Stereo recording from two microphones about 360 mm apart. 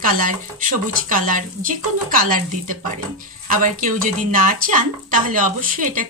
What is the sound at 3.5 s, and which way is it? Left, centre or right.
Speech, right.